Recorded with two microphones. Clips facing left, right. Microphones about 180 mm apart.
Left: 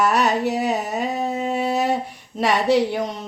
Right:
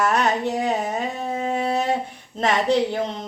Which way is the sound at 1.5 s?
5° left (ahead or behind).